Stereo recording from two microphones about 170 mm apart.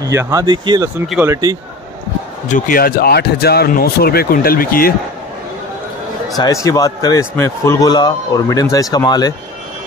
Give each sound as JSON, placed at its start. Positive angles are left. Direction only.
{"t": 0.1, "sound": "speech", "side_deg": -15}
{"t": 2.4, "sound": "speech", "side_deg": 55}
{"t": 6.3, "sound": "a man's voice", "side_deg": 20}